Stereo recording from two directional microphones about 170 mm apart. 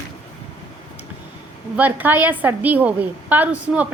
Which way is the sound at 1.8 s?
10° right (ahead or behind).